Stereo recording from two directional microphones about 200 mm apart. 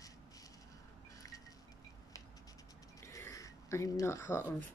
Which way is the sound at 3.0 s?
15° left (ahead or behind).